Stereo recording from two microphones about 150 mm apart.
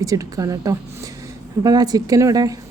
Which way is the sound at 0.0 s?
25° right (ahead or behind).